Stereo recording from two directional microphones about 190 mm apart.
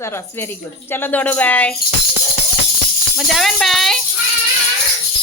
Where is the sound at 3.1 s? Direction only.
Centre (ahead or behind).